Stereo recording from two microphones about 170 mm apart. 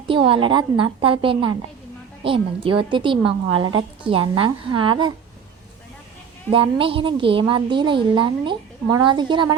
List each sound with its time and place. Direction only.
0.1 s a woman's voice: 30° right (ahead or behind)
6.5 s a woman's voice: 30° right (ahead or behind)